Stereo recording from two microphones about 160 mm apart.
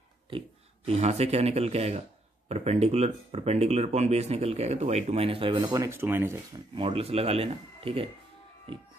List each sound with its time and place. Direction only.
0.3 s a man's voice: 35° right (ahead or behind); by 6.3 s 15° right (ahead or behind)
6.7 s a man's voice: 35° right (ahead or behind)